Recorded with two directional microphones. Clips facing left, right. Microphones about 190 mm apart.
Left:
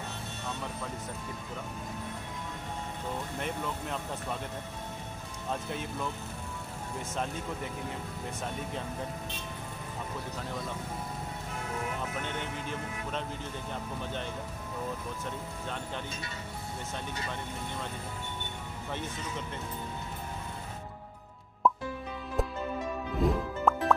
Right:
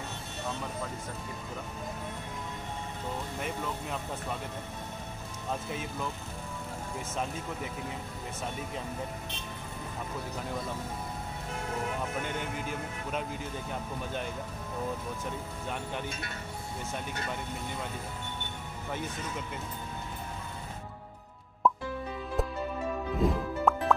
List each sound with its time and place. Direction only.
3.3 s speech: 5° right (ahead or behind)
5.5 s speech: 5° right (ahead or behind)
12.2 s speech: 10° right (ahead or behind)
21.6 s plop: centre (ahead or behind)
22.4 s music: centre (ahead or behind)
23.2 s speech: centre (ahead or behind)
23.7 s music: centre (ahead or behind)